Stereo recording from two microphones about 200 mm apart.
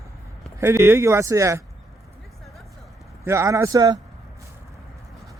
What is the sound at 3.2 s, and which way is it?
Speech, 15° right (ahead or behind).